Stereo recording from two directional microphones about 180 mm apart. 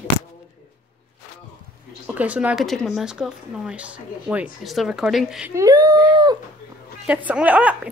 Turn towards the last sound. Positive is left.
turn(degrees=-10)  # may be behind; listen again after turning